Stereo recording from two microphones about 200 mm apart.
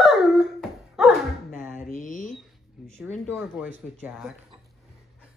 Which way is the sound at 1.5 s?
10° right (ahead or behind).